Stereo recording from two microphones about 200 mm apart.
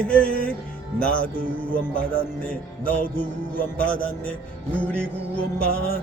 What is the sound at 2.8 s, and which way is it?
Music, 45° left (ahead or behind).